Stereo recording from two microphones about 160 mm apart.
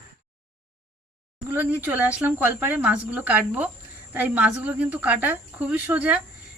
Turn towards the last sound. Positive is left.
turn(degrees=-10)  # may be behind; listen again after turning